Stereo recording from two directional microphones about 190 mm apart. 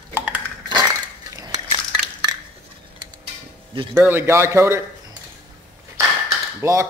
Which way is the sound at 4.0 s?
10° right (ahead or behind).